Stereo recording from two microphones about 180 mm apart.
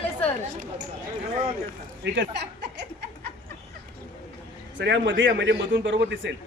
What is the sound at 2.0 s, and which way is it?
Speech, 75° right (ahead or behind).